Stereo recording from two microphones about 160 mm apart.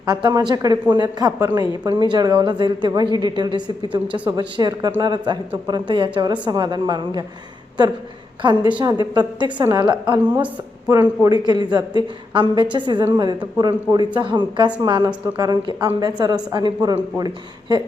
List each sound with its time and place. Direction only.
0.0 s a woman's voice: 25° right (ahead or behind)
8.4 s a woman's voice: 30° right (ahead or behind)